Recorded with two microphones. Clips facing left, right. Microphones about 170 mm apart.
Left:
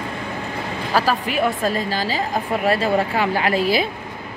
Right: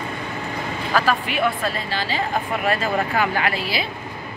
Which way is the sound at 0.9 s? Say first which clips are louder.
Left 1 dB; 35° left (ahead or behind).